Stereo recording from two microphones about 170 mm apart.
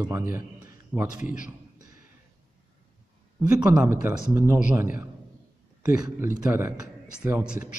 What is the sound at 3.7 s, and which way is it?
Speech, 5° right (ahead or behind).